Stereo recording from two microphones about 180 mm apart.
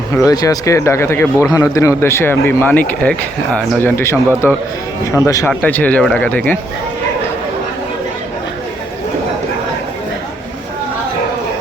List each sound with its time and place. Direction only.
0.1 s speech: 20° left (ahead or behind)
5.5 s speech: 10° left (ahead or behind)